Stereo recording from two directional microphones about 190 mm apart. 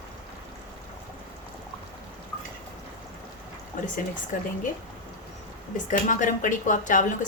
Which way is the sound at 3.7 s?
45° left (ahead or behind).